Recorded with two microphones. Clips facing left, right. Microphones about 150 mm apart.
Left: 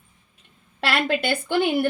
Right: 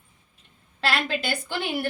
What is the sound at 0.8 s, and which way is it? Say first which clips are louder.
Speech: left 4 dB; 60° left (ahead or behind).